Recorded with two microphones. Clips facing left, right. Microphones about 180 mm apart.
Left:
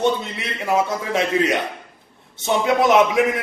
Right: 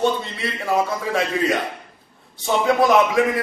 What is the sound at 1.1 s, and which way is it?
Speech, 20° left (ahead or behind).